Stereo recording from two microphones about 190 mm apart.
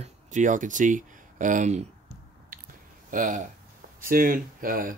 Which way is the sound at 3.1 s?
45° right (ahead or behind).